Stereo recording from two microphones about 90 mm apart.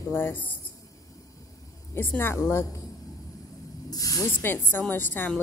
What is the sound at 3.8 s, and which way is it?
Speech, 40° left (ahead or behind).